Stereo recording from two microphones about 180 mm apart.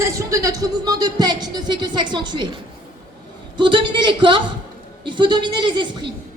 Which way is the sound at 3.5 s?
25° right (ahead or behind).